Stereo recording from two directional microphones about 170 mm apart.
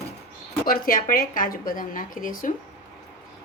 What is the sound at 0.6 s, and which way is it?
A woman's voice, 55° left (ahead or behind).